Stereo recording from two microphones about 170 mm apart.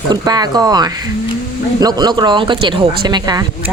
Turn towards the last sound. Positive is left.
turn(degrees=-25)  # may be behind; listen again after turning